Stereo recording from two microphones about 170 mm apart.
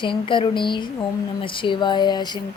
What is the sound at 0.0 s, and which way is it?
A woman's voice, 30° left (ahead or behind).